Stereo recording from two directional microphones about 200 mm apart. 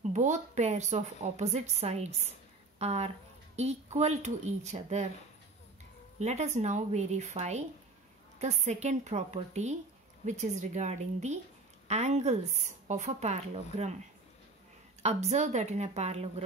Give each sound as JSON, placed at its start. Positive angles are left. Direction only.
{"t": 0.0, "sound": "a woman's voice", "side_deg": -35}
{"t": 6.1, "sound": "a woman's voice", "side_deg": -35}
{"t": 15.0, "sound": "a woman's voice", "side_deg": -35}